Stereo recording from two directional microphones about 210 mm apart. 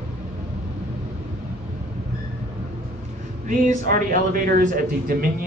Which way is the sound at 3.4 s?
40° right (ahead or behind).